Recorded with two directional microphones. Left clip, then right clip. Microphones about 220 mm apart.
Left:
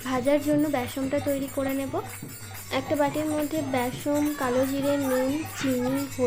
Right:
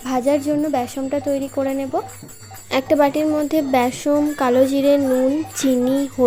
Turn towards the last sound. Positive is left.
turn(degrees=-35)  # may be behind; listen again after turning